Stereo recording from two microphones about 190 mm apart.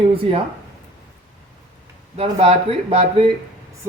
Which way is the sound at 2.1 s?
30° right (ahead or behind).